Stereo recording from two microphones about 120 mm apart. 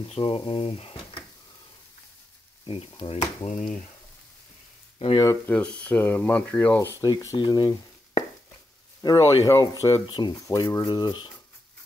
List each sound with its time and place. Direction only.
0.0 s speech: 50° left (ahead or behind)
2.6 s speech: 45° left (ahead or behind); by 3.8 s 85° left
4.9 s frying: 55° left (ahead or behind)
5.5 s speech: 10° left (ahead or behind)
7.0 s speech: 30° left (ahead or behind)
9.0 s speech: 25° left (ahead or behind)